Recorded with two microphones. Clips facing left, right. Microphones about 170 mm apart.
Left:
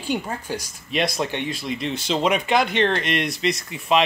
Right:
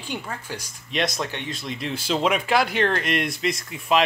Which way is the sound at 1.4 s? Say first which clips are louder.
Left 3 dB; centre (ahead or behind).